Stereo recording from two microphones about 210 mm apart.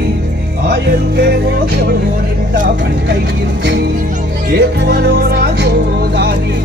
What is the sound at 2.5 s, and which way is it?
Speech, 40° right (ahead or behind).